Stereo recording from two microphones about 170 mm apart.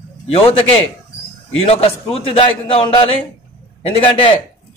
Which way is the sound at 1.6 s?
35° left (ahead or behind).